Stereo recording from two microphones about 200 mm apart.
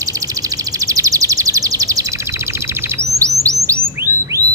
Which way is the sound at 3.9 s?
15° right (ahead or behind).